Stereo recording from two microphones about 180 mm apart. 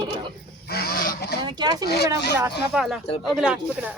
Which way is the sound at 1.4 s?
25° right (ahead or behind).